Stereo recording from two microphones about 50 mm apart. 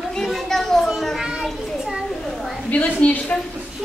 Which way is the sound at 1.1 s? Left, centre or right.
Centre.